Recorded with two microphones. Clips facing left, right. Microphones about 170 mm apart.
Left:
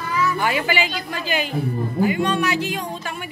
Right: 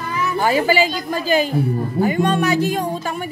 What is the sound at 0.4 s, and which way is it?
A woman's voice, 40° right (ahead or behind).